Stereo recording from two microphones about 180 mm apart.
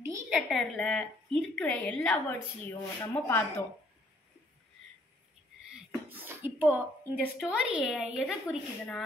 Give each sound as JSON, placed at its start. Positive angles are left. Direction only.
{"t": 0.3, "sound": "a woman's voice", "side_deg": 0}
{"t": 2.7, "sound": "speech", "side_deg": 15}
{"t": 5.7, "sound": "a sound", "side_deg": -10}
{"t": 7.3, "sound": "a woman's voice", "side_deg": -5}